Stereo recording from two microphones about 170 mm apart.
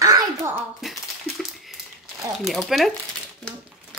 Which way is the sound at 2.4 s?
Centre (ahead or behind).